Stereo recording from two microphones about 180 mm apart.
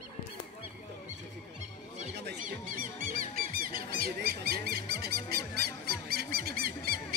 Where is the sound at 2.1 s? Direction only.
70° right (ahead or behind).